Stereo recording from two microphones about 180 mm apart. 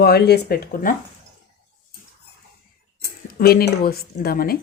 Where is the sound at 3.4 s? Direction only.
55° left (ahead or behind).